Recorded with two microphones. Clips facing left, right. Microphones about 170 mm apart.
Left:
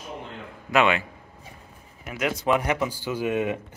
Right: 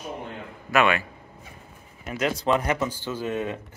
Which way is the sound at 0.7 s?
20° left (ahead or behind).